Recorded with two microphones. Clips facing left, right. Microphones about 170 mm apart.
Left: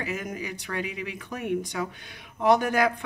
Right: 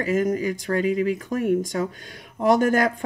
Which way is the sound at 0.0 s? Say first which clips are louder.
Right 11 dB; 40° right (ahead or behind).